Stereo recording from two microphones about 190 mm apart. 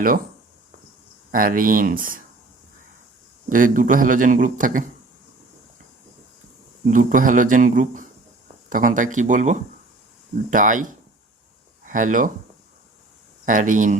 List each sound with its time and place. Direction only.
1.3 s a man's voice: 45° right (ahead or behind)
3.5 s a man's voice: 45° right (ahead or behind)
6.8 s a man's voice: 45° right (ahead or behind)
13.4 s a man's voice: 45° right (ahead or behind)